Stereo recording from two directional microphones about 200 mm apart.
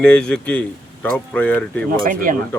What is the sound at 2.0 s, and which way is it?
Speech, 45° right (ahead or behind).